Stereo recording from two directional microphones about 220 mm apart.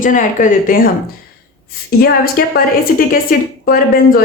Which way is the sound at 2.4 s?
40° left (ahead or behind).